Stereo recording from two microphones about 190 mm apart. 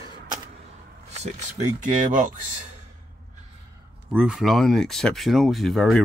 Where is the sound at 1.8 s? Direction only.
40° right (ahead or behind).